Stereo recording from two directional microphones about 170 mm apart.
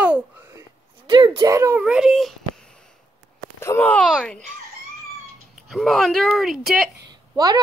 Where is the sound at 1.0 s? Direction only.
30° right (ahead or behind).